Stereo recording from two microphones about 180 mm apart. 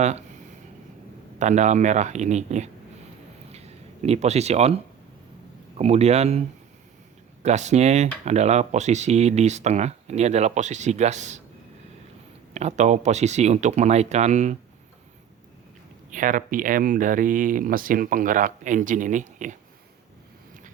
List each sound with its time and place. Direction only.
0.0 s speech: 40° right (ahead or behind)
1.4 s speech: 40° right (ahead or behind)
3.5 s a sound: 35° right (ahead or behind)
5.7 s speech: 35° right (ahead or behind)
7.4 s speech: 40° right (ahead or behind)
12.5 s speech: 40° right (ahead or behind)
16.0 s speech: 45° right (ahead or behind)